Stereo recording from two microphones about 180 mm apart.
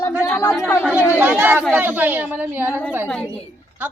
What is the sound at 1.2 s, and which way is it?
A woman's voice, 10° right (ahead or behind).